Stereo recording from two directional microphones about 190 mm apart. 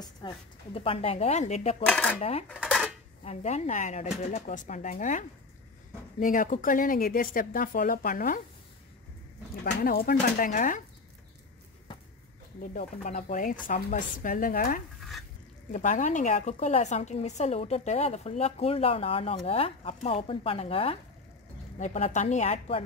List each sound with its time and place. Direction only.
0.2 s a woman's voice: 25° left (ahead or behind)
1.9 s dishes: 5° left (ahead or behind)
2.1 s a woman's voice: 35° left (ahead or behind)
2.5 s dishes: centre (ahead or behind)
3.3 s a woman's voice: 35° left (ahead or behind)
9.8 s a woman's voice: 50° left (ahead or behind)
12.5 s a woman's voice: 40° left (ahead or behind)
15.0 s stir: centre (ahead or behind)
15.7 s a woman's voice: 40° left (ahead or behind)